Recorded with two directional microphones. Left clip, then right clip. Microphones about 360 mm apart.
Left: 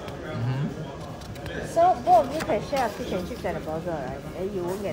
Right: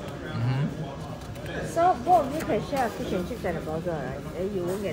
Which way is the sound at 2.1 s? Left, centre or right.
Centre.